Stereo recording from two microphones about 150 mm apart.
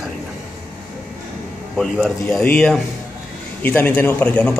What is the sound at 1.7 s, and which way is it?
A man's voice, centre (ahead or behind).